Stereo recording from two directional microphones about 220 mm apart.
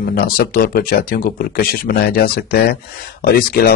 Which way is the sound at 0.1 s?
40° left (ahead or behind).